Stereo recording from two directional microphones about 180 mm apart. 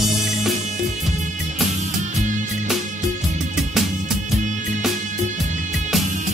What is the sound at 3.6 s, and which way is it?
Music, centre (ahead or behind).